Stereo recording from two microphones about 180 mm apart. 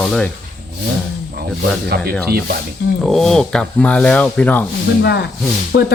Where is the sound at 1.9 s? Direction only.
60° right (ahead or behind).